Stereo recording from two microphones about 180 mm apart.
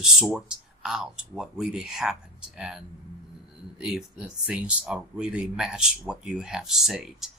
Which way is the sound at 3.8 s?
5° right (ahead or behind).